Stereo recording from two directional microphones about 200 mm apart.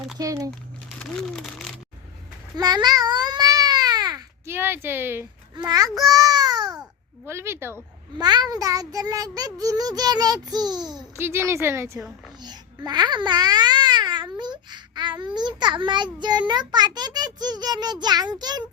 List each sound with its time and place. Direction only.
0.2 s child singing: 15° right (ahead or behind)
0.9 s speech: 5° left (ahead or behind)
2.6 s babbling: 20° right (ahead or behind)
7.3 s child singing: 15° right (ahead or behind)
12.4 s babbling: 20° right (ahead or behind)
15.4 s a child's voice: 20° right (ahead or behind)